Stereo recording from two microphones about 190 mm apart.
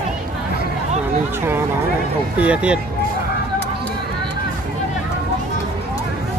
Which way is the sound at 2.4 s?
5° right (ahead or behind).